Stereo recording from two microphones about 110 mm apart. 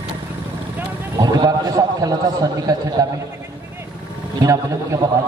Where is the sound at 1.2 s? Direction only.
35° right (ahead or behind).